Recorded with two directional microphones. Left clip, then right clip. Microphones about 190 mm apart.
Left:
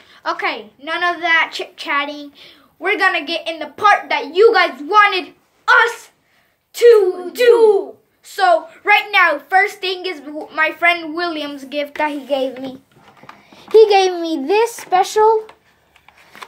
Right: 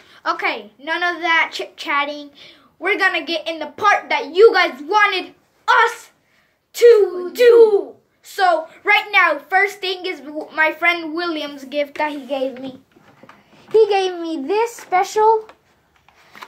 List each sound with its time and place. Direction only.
0.1 s a woman's voice: 5° right (ahead or behind)
12.0 s a child's voice: 25° left (ahead or behind)
13.7 s a child's voice: 50° left (ahead or behind)
14.3 s a child's voice: 25° left (ahead or behind)